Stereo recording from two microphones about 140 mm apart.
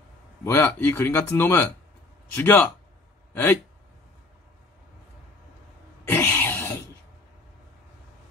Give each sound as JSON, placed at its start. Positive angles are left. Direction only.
{"t": 0.4, "sound": "speech", "side_deg": 15}
{"t": 6.0, "sound": "cough", "side_deg": 15}